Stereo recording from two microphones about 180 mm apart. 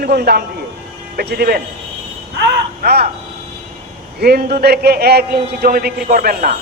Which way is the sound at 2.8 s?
60° right (ahead or behind).